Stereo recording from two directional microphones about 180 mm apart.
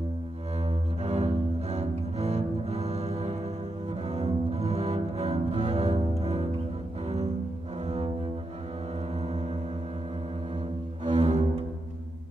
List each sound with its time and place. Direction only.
0.7 s cello: 35° right (ahead or behind)
7.8 s cello: 35° right (ahead or behind)
11.1 s cello: 40° right (ahead or behind)